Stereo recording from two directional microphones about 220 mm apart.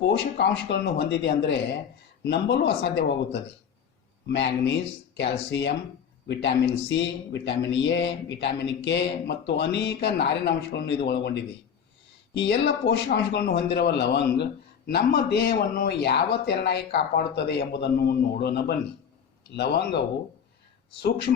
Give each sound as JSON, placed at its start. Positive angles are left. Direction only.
{"t": 0.1, "sound": "a man's voice", "side_deg": 50}
{"t": 4.3, "sound": "a man's voice", "side_deg": 50}